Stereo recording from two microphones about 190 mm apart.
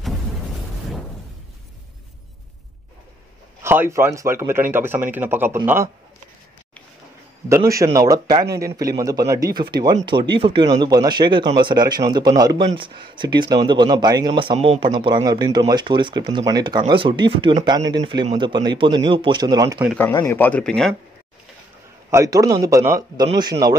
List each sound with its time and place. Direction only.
3.6 s speech: 10° right (ahead or behind)
7.4 s speech: 15° right (ahead or behind)
20.0 s speech: 15° left (ahead or behind)
22.1 s speech: 15° right (ahead or behind)